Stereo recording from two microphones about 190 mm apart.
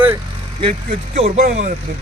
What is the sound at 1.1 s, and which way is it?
Speech, 35° right (ahead or behind).